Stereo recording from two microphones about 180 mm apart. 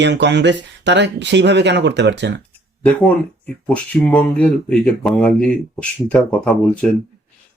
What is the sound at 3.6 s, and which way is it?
Speech, 5° left (ahead or behind).